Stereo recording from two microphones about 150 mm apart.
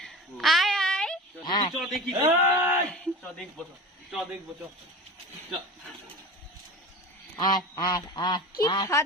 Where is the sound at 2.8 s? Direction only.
5° left (ahead or behind).